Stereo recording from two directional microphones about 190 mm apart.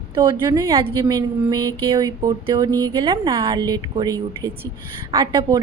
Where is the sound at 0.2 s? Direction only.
20° right (ahead or behind).